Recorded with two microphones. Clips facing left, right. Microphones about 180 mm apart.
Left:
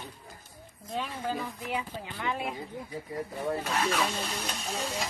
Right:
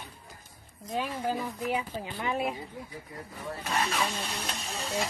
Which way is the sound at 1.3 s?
20° right (ahead or behind).